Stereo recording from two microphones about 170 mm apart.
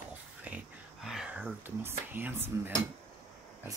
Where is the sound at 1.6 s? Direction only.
10° right (ahead or behind).